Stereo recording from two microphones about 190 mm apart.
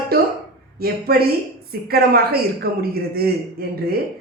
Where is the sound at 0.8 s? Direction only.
55° right (ahead or behind).